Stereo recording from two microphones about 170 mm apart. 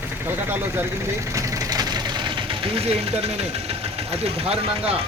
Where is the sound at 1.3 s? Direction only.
20° right (ahead or behind); by 5.0 s 35° right (ahead or behind).